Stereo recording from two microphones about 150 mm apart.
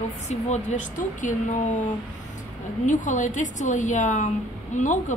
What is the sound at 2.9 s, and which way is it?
Speech, 55° left (ahead or behind).